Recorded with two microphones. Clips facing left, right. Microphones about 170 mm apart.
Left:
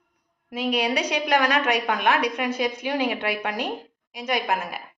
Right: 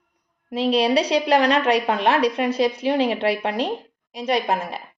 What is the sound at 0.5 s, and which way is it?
A woman's voice, 30° right (ahead or behind).